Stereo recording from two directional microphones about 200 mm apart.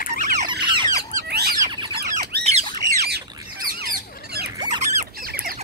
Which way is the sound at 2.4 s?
30° right (ahead or behind).